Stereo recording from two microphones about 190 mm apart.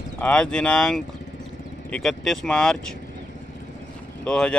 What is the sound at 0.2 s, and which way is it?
Speech, 5° left (ahead or behind).